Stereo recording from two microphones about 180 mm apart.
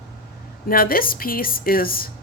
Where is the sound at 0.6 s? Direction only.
55° left (ahead or behind).